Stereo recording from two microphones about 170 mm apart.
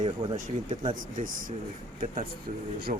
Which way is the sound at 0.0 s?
45° right (ahead or behind).